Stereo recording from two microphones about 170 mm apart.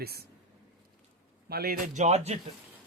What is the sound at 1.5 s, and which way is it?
Speech, 65° right (ahead or behind).